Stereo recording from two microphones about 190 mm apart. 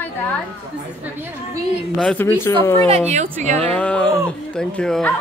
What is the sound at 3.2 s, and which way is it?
Speech, 40° right (ahead or behind).